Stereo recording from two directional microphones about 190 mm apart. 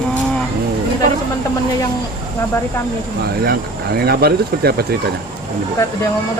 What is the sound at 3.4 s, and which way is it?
Speech, 55° right (ahead or behind).